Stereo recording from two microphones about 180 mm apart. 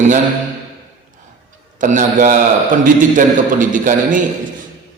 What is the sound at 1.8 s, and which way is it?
A man's voice, 45° right (ahead or behind).